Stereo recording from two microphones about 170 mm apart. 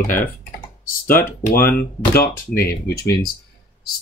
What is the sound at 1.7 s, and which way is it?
Speech, 60° left (ahead or behind).